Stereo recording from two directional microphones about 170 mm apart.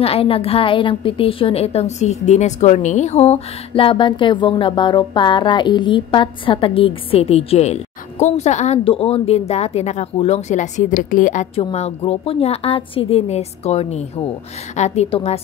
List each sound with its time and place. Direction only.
0.0 s a woman's voice: 35° left (ahead or behind); by 11.4 s 50° left (ahead or behind)
11.5 s a woman's voice: 35° left (ahead or behind)